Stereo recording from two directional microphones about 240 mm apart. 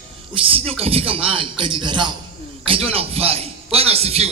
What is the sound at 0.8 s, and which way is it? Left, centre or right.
A man's voice, right.